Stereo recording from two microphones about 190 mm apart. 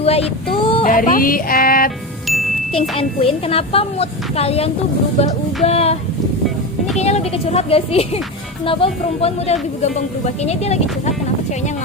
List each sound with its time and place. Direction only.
0.0 s child singing: 30° left (ahead or behind)
0.6 s a sound: 30° left (ahead or behind)
0.9 s speech: 45° left (ahead or behind)
3.0 s speech: 30° left (ahead or behind)